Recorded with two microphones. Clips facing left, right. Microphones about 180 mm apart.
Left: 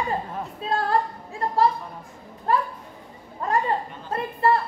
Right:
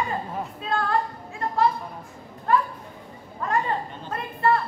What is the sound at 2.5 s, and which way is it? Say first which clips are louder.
A woman's voice: right 1 dB; 35° left (ahead or behind).